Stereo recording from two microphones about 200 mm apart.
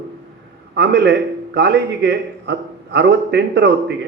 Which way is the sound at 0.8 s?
60° right (ahead or behind).